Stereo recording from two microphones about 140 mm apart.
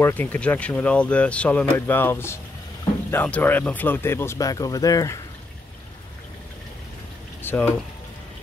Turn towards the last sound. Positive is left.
turn(degrees=15)  # may be behind; listen again after turning